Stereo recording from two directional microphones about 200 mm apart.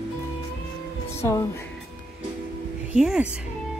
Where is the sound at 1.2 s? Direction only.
15° left (ahead or behind).